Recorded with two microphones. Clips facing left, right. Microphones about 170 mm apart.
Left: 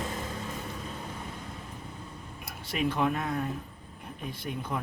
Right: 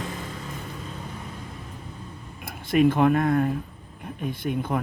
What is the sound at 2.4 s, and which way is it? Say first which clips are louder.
A man's voice: right 11 dB; 50° right (ahead or behind).